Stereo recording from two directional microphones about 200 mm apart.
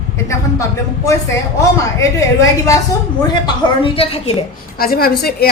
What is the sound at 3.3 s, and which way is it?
A woman's voice, 25° left (ahead or behind).